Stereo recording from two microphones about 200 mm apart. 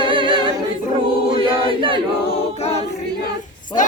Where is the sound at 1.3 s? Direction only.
25° right (ahead or behind).